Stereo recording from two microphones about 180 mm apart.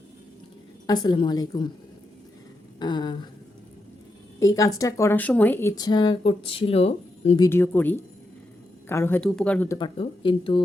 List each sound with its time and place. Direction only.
0.9 s speech: 25° left (ahead or behind)
2.7 s speech: 25° left (ahead or behind)
4.4 s speech: 20° left (ahead or behind); by 7.3 s 35° left (ahead or behind)
7.3 s speech: 15° left (ahead or behind)
9.7 s speech: 25° left (ahead or behind)